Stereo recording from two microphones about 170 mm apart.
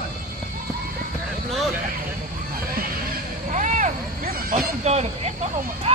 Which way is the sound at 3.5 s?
45° right (ahead or behind).